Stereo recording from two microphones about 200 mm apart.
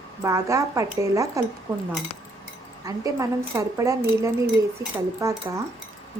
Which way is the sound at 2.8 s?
15° right (ahead or behind).